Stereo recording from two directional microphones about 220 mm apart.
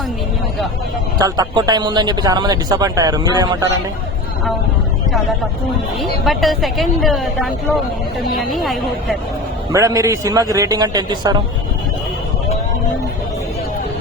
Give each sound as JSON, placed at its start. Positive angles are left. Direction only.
{"t": 1.2, "sound": "a man's voice", "side_deg": -15}
{"t": 6.0, "sound": "a woman's voice", "side_deg": 0}
{"t": 9.7, "sound": "a man's voice", "side_deg": -15}